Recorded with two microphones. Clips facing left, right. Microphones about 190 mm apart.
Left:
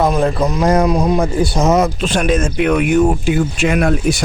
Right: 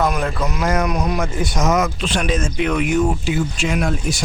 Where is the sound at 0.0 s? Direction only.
30° left (ahead or behind).